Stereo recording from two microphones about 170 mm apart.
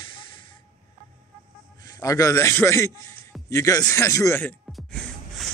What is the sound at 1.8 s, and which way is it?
A man's voice, 20° left (ahead or behind).